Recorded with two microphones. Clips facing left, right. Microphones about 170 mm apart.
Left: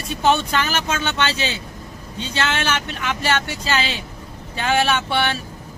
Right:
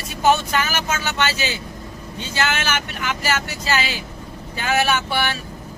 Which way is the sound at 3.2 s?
30° left (ahead or behind).